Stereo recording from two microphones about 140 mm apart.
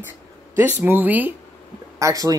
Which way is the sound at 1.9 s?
25° right (ahead or behind).